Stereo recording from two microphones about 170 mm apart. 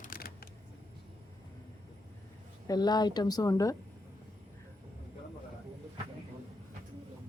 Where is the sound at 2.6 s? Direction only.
25° left (ahead or behind).